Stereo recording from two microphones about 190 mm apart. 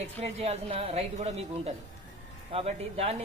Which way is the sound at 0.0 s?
35° right (ahead or behind).